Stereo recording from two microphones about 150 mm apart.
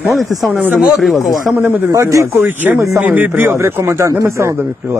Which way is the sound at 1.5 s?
15° right (ahead or behind).